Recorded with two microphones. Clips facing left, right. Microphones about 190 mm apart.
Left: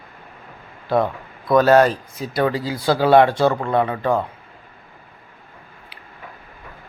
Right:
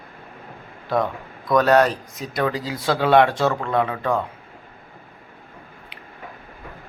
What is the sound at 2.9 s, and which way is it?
Speech, 30° left (ahead or behind).